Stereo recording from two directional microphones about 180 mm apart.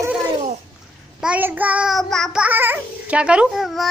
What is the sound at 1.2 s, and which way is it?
Child singing, 10° right (ahead or behind).